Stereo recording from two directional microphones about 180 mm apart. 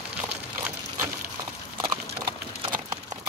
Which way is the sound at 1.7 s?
25° right (ahead or behind).